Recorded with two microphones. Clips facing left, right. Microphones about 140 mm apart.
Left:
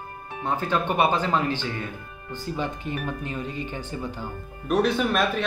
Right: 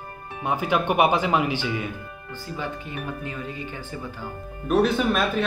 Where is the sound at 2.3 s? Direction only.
20° left (ahead or behind).